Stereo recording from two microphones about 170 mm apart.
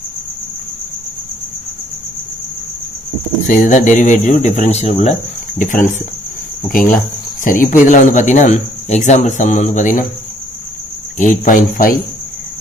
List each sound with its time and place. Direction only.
3.4 s speech: 50° left (ahead or behind)
11.1 s speech: 50° left (ahead or behind)